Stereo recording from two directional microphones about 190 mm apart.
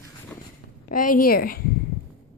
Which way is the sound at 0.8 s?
45° left (ahead or behind).